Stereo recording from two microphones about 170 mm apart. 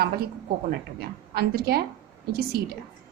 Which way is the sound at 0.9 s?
65° right (ahead or behind).